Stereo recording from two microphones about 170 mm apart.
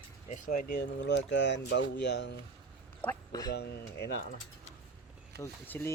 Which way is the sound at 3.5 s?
75° left (ahead or behind).